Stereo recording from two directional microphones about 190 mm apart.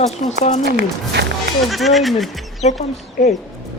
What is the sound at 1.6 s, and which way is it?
Speech, centre (ahead or behind).